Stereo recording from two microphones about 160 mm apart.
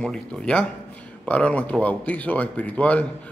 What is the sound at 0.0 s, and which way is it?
Speech, 5° left (ahead or behind).